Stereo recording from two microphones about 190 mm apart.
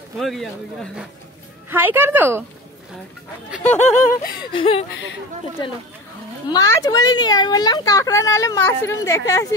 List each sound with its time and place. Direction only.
0.2 s speech: centre (ahead or behind)
1.7 s a woman's voice: 10° right (ahead or behind)
3.8 s laughter: 40° left (ahead or behind)
4.4 s speech: 25° left (ahead or behind)
6.5 s speech: 20° left (ahead or behind)